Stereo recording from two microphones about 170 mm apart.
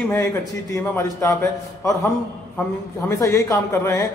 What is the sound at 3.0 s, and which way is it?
Speech, 15° left (ahead or behind).